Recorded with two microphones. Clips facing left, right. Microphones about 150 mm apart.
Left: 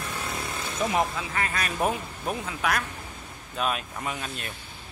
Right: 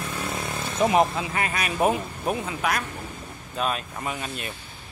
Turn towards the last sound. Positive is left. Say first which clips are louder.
# right 2 dB
turn(degrees=-5)  # may be behind; listen again after turning